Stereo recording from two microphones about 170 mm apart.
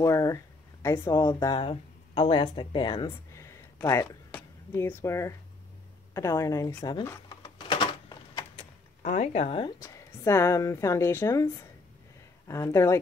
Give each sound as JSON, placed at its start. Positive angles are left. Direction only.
{"t": 0.0, "sound": "a woman's voice", "side_deg": 20}
{"t": 7.1, "sound": "a sound", "side_deg": 25}
{"t": 9.0, "sound": "a woman's voice", "side_deg": 45}
{"t": 12.4, "sound": "speech", "side_deg": 20}